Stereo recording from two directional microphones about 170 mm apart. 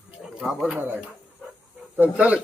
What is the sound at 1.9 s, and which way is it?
Speech, 10° right (ahead or behind).